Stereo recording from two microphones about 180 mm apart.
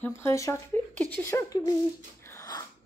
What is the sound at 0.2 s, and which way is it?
Speech, 15° left (ahead or behind).